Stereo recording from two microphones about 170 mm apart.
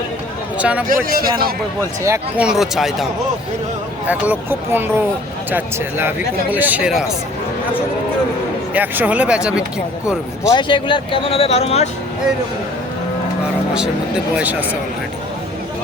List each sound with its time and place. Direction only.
0.6 s speech: 10° right (ahead or behind)
1.0 s a man's voice: 60° right (ahead or behind)
2.4 s speech: 5° right (ahead or behind)
8.7 s speech: 10° right (ahead or behind)
10.4 s speech: 25° left (ahead or behind)
14.3 s speech: 10° right (ahead or behind)